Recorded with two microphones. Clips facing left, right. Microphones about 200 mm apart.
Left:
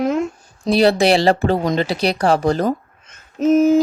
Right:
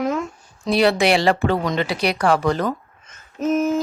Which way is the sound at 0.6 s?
35° left (ahead or behind).